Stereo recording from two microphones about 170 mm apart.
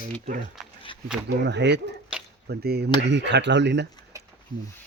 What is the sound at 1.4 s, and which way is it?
Speech, 90° right.